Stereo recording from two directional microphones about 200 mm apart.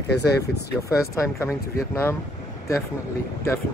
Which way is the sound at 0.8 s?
15° left (ahead or behind).